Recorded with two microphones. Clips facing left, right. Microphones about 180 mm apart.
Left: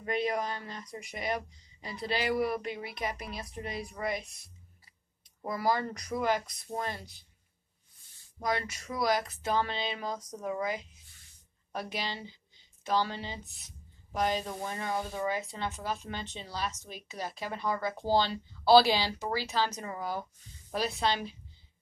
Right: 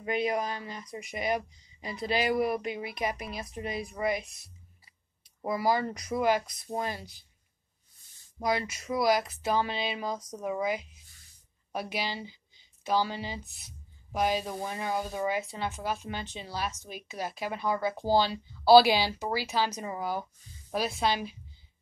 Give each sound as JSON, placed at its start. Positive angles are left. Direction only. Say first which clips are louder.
{"t": 0.0, "sound": "speech", "louder": "right 2 dB", "side_deg": -10}
{"t": 5.4, "sound": "speech", "louder": "right 3 dB", "side_deg": -10}
{"t": 8.4, "sound": "speech", "louder": "right 3 dB", "side_deg": -10}